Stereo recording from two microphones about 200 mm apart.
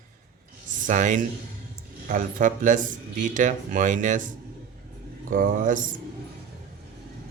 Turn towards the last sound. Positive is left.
turn(degrees=-40)  # may be behind; listen again after turning